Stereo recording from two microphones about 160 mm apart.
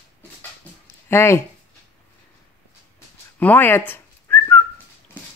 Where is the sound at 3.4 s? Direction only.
10° left (ahead or behind).